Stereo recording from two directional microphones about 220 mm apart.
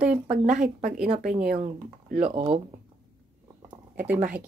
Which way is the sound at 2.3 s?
25° right (ahead or behind).